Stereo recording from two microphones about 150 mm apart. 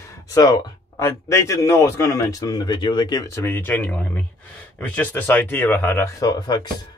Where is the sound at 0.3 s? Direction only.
25° left (ahead or behind).